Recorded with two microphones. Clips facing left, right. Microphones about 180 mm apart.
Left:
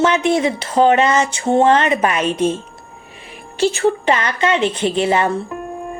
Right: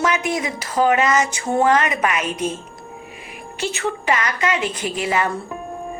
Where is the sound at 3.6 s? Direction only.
30° left (ahead or behind).